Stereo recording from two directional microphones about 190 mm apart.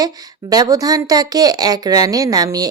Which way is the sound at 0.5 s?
20° right (ahead or behind).